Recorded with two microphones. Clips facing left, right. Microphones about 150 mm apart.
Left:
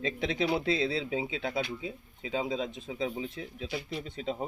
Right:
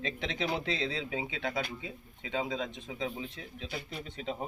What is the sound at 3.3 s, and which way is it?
Speech, 30° left (ahead or behind).